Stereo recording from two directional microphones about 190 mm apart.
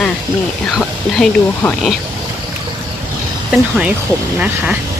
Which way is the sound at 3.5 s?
5° right (ahead or behind).